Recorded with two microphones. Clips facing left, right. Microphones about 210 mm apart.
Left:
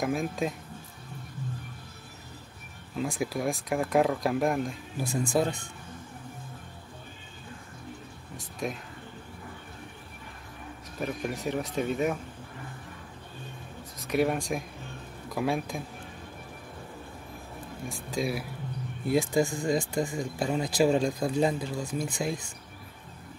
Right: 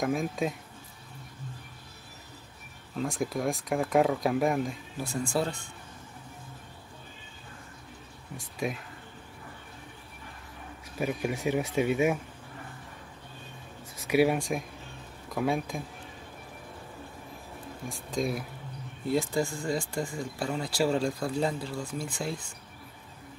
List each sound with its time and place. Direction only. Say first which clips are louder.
0.0 s speech: even; centre (ahead or behind)
3.0 s speech: even; 5° left (ahead or behind)
5.0 s speech: left 3 dB; 15° left (ahead or behind)
11.0 s speech: right 2 dB; 5° right (ahead or behind)
14.0 s speech: right 2 dB; 5° right (ahead or behind)
17.8 s speech: even; 5° left (ahead or behind)
19.0 s speech: left 3 dB; 15° left (ahead or behind)